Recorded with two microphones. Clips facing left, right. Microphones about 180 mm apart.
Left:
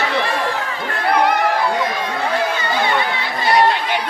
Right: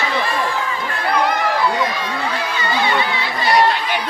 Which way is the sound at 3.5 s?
25° left (ahead or behind).